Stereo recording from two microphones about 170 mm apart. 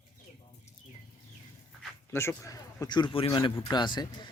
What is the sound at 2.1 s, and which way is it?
A man's voice, 15° left (ahead or behind).